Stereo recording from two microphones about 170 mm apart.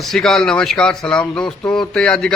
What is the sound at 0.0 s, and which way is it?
A man's voice, centre (ahead or behind).